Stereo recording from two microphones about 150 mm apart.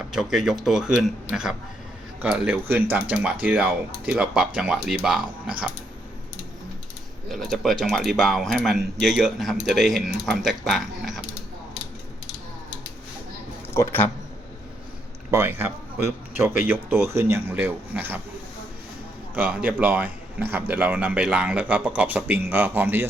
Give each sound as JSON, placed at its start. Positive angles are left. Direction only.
{"t": 0.1, "sound": "a man's voice", "side_deg": 0}
{"t": 7.3, "sound": "speech", "side_deg": 0}
{"t": 13.7, "sound": "speech", "side_deg": 15}
{"t": 15.3, "sound": "a man's voice", "side_deg": -15}
{"t": 19.3, "sound": "a man's voice", "side_deg": -10}